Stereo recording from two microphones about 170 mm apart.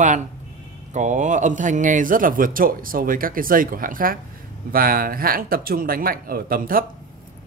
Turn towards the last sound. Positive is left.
turn(degrees=-55)  # may be behind; listen again after turning